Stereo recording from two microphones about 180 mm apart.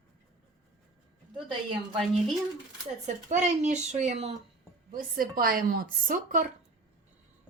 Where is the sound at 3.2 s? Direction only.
40° right (ahead or behind).